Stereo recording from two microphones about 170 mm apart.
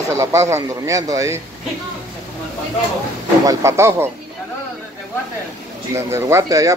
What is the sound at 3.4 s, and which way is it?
Speech, 20° right (ahead or behind).